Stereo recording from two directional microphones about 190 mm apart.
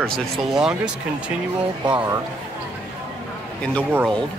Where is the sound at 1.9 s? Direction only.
25° right (ahead or behind).